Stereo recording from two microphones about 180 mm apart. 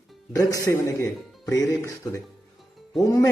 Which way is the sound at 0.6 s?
15° left (ahead or behind).